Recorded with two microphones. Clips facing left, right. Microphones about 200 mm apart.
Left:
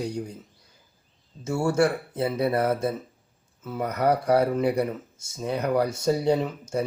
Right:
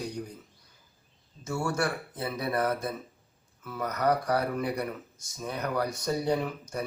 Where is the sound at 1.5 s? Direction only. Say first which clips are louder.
Left 7 dB; 25° left (ahead or behind).